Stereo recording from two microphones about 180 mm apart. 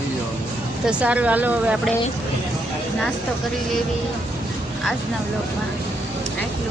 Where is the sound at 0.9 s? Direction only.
5° right (ahead or behind).